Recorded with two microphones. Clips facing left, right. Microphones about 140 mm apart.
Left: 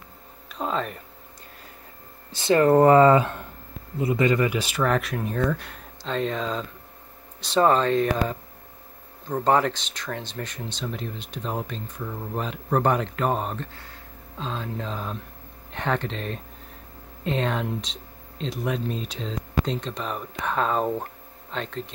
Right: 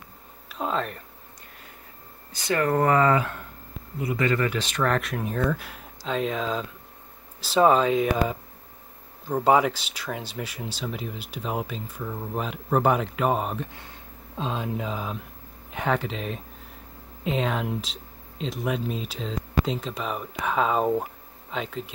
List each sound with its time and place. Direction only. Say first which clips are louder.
0.5 s a sound: even; centre (ahead or behind)
2.3 s speech: left 6 dB; 25° left (ahead or behind); by 13.7 s 5° right (ahead or behind)
13.7 s speech: even; 20° right (ahead or behind)